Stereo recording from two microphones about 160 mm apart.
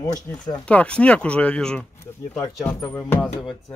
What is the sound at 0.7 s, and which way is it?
Speech, 10° left (ahead or behind).